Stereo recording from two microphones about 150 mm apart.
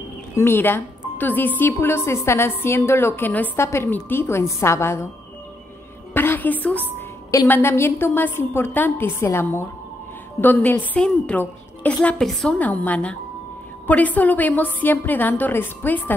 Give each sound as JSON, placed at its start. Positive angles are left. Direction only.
{"t": 0.4, "sound": "a woman's voice", "side_deg": 15}
{"t": 6.1, "sound": "a woman's voice", "side_deg": 15}